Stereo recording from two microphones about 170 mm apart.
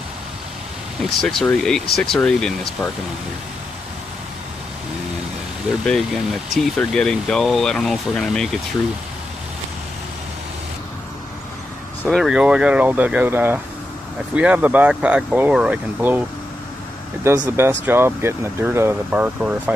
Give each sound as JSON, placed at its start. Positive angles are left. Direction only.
{"t": 1.2, "sound": "speech", "side_deg": 5}
{"t": 5.9, "sound": "speech", "side_deg": 0}
{"t": 12.0, "sound": "speech", "side_deg": 0}
{"t": 17.5, "sound": "speech", "side_deg": -15}